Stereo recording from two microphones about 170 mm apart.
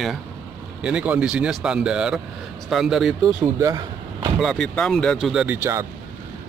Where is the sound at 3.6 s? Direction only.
20° right (ahead or behind).